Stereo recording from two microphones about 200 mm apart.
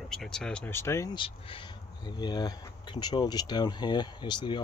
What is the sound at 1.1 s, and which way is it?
Speech, 25° left (ahead or behind).